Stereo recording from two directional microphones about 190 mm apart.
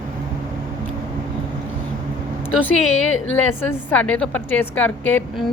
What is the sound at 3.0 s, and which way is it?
Speech, 90° left.